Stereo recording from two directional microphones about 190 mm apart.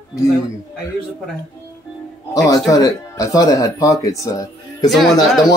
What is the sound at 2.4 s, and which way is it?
Speech, 20° left (ahead or behind).